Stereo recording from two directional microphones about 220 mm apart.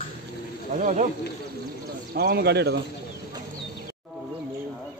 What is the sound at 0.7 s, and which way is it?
Speech, 35° right (ahead or behind).